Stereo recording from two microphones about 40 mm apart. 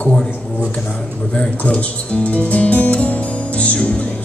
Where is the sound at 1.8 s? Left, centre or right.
Left.